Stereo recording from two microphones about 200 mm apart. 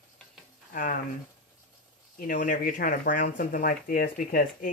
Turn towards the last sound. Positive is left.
turn(degrees=45)  # may be behind; listen again after turning